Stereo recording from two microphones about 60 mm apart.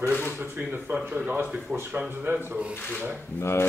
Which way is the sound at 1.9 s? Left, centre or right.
Right.